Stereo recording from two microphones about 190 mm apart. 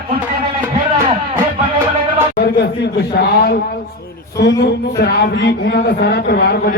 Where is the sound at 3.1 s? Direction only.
55° left (ahead or behind).